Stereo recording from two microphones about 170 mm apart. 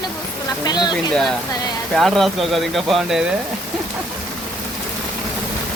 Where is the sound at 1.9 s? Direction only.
Centre (ahead or behind).